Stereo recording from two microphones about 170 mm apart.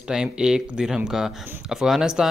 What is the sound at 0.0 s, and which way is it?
Speech, 5° right (ahead or behind).